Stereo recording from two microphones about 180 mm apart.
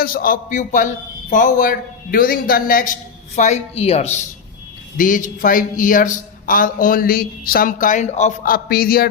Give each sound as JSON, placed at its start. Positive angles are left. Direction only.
{"t": 0.0, "sound": "speech", "side_deg": 55}
{"t": 3.3, "sound": "a woman's voice", "side_deg": 40}
{"t": 4.9, "sound": "speech", "side_deg": 45}